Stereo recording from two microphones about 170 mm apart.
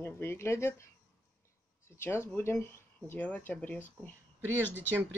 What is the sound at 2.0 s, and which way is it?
Speech, 15° left (ahead or behind).